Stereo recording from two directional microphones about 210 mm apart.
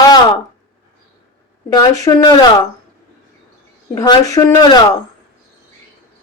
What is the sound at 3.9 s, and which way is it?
Speech, 15° left (ahead or behind).